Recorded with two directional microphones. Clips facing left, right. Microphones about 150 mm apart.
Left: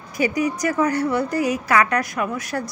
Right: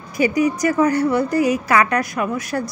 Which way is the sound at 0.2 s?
10° right (ahead or behind).